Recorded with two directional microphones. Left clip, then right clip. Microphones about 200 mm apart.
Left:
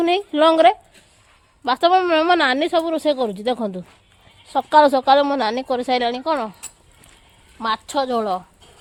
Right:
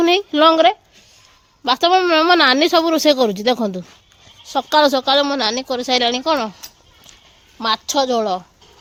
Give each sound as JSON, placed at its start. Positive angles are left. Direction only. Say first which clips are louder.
{"t": 0.0, "sound": "speech", "louder": "right 3 dB", "side_deg": -20}
{"t": 6.0, "sound": "speech", "louder": "right 4 dB", "side_deg": -25}
{"t": 7.6, "sound": "speech", "louder": "right 4 dB", "side_deg": -30}